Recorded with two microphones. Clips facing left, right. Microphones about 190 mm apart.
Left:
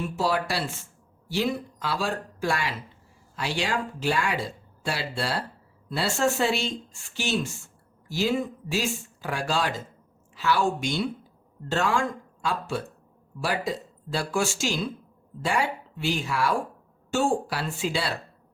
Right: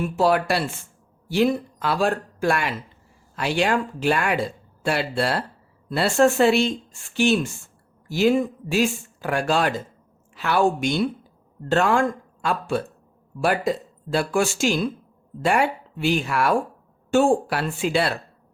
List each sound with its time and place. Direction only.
0.2 s speech: 60° right (ahead or behind)